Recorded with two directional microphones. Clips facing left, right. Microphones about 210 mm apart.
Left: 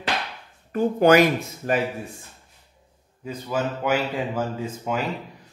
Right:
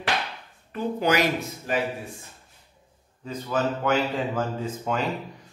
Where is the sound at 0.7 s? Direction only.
50° left (ahead or behind).